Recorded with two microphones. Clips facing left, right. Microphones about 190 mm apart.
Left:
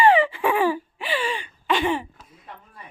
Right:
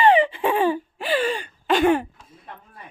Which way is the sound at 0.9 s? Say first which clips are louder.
Right 4 dB; 45° right (ahead or behind).